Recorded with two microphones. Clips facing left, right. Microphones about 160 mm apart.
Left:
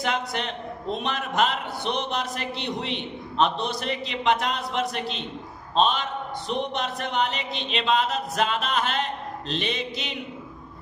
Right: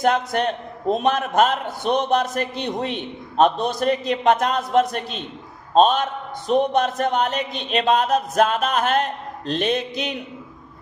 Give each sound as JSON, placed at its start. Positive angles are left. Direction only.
{"t": 0.0, "sound": "a man's voice", "side_deg": -45}